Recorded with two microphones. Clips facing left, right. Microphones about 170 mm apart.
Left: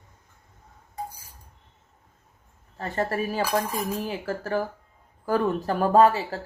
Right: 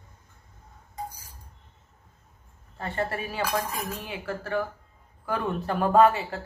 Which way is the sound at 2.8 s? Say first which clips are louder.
Left 3 dB; 40° left (ahead or behind).